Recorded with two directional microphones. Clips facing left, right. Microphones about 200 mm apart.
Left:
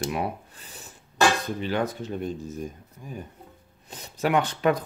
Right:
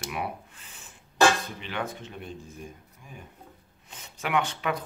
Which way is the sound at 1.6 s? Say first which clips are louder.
Left 7 dB; 40° left (ahead or behind).